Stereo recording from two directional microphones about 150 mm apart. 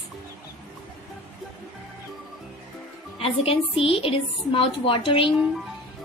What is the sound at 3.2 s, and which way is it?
A woman's voice, 40° left (ahead or behind).